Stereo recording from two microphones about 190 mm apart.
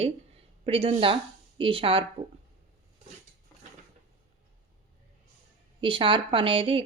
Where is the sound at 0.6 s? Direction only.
30° right (ahead or behind).